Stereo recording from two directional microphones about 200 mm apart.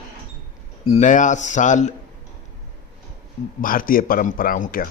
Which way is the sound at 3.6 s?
45° left (ahead or behind).